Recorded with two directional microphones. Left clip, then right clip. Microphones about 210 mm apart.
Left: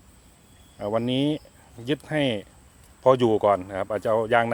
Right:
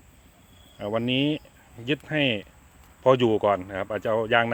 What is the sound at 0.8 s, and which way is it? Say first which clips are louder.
Speech: left 1 dB; centre (ahead or behind).